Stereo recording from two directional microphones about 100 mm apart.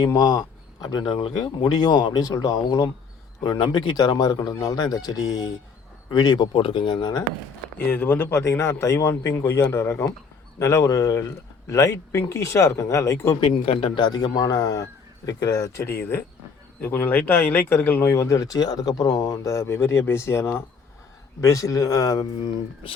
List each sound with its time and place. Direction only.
0.2 s speech: 45° left (ahead or behind)
6.6 s speech: 60° left (ahead or behind); by 7.3 s 45° left (ahead or behind)
7.9 s speech: 15° left (ahead or behind)
13.4 s speech: 60° left (ahead or behind); by 15.9 s 35° left (ahead or behind)
15.9 s speech: 20° left (ahead or behind)